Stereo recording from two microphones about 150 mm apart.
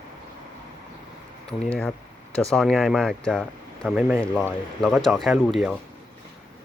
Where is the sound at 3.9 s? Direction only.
10° right (ahead or behind).